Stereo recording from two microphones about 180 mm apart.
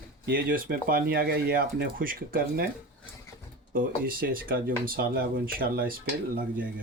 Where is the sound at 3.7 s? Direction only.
50° right (ahead or behind).